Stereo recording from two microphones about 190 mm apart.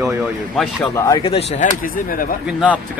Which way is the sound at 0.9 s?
15° left (ahead or behind).